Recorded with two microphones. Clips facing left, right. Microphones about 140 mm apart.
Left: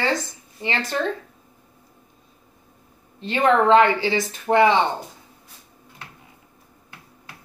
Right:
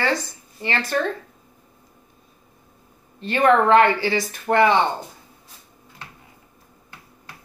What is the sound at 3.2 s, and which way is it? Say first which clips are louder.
A woman's voice: right 1 dB; 20° left (ahead or behind).